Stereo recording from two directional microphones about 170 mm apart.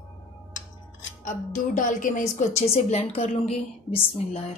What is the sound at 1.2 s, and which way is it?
A woman's voice, 50° left (ahead or behind).